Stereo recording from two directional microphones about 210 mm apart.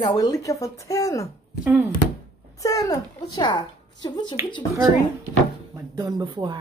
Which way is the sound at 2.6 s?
15° left (ahead or behind).